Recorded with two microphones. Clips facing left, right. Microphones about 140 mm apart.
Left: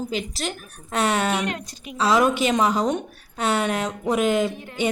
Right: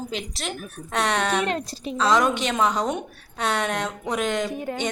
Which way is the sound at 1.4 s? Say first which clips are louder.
Right 3 dB; 30° right (ahead or behind).